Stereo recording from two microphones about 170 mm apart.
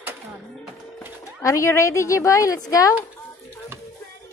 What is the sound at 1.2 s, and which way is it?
Speech, 20° left (ahead or behind).